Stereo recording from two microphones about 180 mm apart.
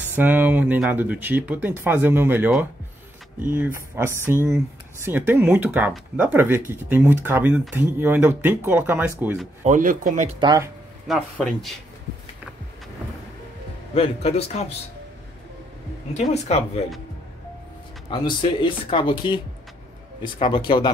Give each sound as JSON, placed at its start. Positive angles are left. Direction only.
{"t": 0.1, "sound": "speech", "side_deg": -10}
{"t": 9.6, "sound": "speech", "side_deg": -45}
{"t": 10.4, "sound": "speech", "side_deg": -20}
{"t": 11.1, "sound": "speech", "side_deg": 0}
{"t": 13.9, "sound": "a man's voice", "side_deg": 35}
{"t": 16.2, "sound": "a man's voice", "side_deg": 35}
{"t": 18.1, "sound": "speech", "side_deg": 25}